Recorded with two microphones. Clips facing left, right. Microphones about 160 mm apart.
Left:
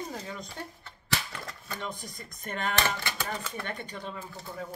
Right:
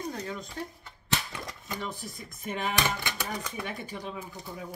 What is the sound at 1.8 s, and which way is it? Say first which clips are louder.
Speech: even; 5° right (ahead or behind).